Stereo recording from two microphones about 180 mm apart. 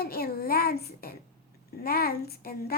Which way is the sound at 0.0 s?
55° left (ahead or behind).